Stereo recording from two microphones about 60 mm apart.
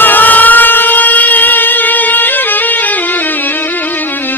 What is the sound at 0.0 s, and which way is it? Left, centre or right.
Siren, left.